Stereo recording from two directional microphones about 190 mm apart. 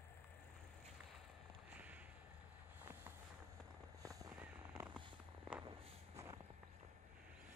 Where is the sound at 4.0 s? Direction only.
20° right (ahead or behind).